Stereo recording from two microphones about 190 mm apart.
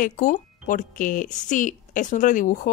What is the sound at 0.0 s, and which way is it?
Speech, 40° left (ahead or behind).